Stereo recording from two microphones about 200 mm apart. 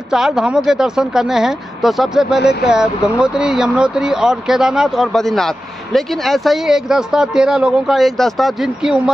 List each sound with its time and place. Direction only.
0.1 s speech: 5° right (ahead or behind)